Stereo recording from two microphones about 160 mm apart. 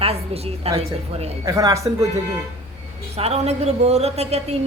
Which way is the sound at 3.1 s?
40° right (ahead or behind).